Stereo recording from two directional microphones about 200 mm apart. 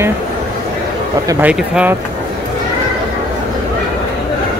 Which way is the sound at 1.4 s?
5° right (ahead or behind).